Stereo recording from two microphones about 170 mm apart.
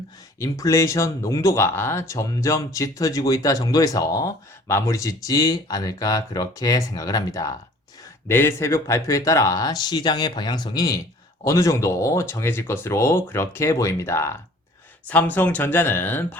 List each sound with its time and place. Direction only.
0.3 s speech: 20° left (ahead or behind)